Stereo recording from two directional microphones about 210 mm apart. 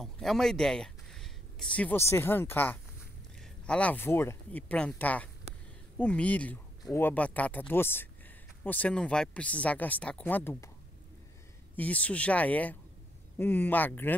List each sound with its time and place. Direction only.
0.0 s speech: centre (ahead or behind)
11.7 s speech: 5° left (ahead or behind)